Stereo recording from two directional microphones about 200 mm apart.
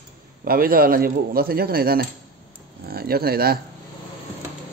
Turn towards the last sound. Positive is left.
turn(degrees=-50)  # may be behind; listen again after turning